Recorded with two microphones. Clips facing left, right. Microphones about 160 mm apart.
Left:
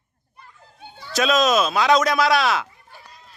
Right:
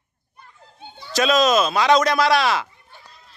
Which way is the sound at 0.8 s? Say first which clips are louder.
Right 1 dB; 20° right (ahead or behind).